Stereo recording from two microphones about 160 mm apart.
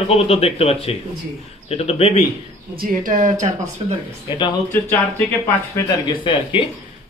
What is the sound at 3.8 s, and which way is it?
Speech, 35° right (ahead or behind).